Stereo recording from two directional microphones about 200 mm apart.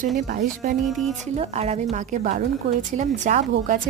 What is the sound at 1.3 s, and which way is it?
A woman's voice, 30° right (ahead or behind).